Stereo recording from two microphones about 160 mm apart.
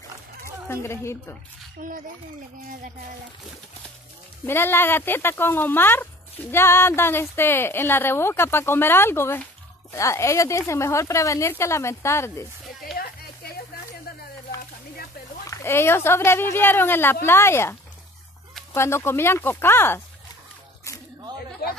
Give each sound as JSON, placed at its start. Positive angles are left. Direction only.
{"t": 0.7, "sound": "speech", "side_deg": 15}
{"t": 1.8, "sound": "speech", "side_deg": -55}
{"t": 4.5, "sound": "speech", "side_deg": 15}
{"t": 12.9, "sound": "a sound", "side_deg": 0}
{"t": 15.4, "sound": "speech", "side_deg": 15}